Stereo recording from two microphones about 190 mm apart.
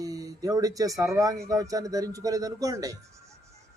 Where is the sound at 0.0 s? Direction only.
20° right (ahead or behind).